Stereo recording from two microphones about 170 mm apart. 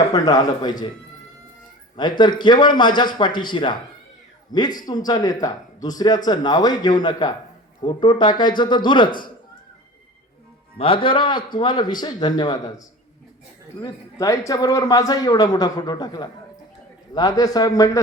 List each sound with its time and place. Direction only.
0.1 s speech: 20° left (ahead or behind)
2.0 s speech: 25° left (ahead or behind)
10.8 s speech: 30° left (ahead or behind)
13.8 s speech: 20° left (ahead or behind)